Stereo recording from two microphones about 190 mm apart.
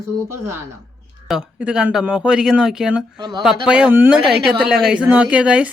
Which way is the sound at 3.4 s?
5° right (ahead or behind).